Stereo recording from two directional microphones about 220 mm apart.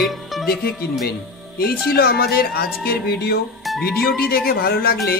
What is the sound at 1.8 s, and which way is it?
Speech, 45° left (ahead or behind).